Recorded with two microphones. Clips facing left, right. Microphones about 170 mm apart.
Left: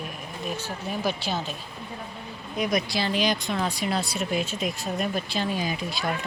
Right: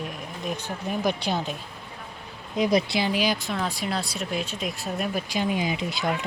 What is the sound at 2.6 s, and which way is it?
Speech, 25° right (ahead or behind).